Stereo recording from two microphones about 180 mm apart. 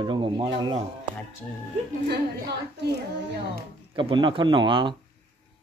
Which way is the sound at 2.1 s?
65° right (ahead or behind).